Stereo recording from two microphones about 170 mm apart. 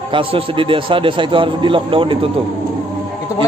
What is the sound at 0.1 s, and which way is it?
A man's voice, 30° right (ahead or behind).